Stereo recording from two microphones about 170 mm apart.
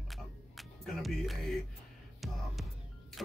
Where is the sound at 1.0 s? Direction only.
Centre (ahead or behind).